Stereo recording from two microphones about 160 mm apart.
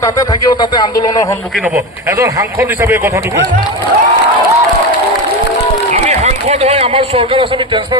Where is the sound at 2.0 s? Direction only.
20° right (ahead or behind).